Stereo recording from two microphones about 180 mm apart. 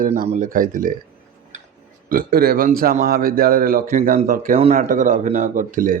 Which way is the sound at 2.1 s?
55° right (ahead or behind).